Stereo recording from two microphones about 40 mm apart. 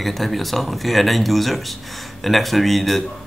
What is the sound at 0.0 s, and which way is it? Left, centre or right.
Speech, centre.